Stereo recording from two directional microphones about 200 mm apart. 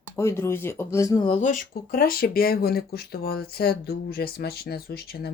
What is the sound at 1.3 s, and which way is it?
Speech, 40° left (ahead or behind).